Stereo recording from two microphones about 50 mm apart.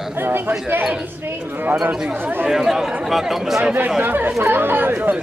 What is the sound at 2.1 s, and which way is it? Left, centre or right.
Speech, right.